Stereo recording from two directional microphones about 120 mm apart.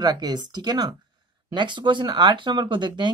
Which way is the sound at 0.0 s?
35° right (ahead or behind).